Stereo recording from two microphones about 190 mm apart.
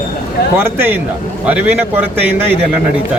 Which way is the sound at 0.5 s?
10° right (ahead or behind).